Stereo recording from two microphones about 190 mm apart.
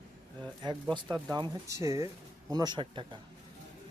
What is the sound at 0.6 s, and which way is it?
Speech, 25° right (ahead or behind).